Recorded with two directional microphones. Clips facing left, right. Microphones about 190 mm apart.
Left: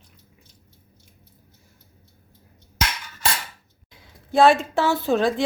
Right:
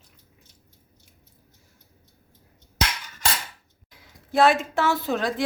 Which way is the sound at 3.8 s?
30° left (ahead or behind).